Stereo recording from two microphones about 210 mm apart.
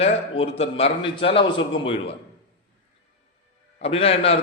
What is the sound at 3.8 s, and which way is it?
Speech, 30° left (ahead or behind).